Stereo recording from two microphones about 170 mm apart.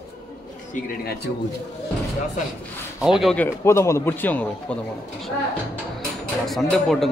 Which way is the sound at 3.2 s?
5° left (ahead or behind).